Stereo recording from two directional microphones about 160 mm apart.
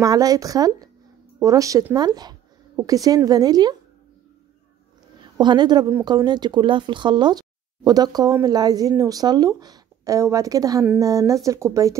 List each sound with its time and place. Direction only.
0.0 s speech: 25° right (ahead or behind)
5.4 s speech: 25° right (ahead or behind)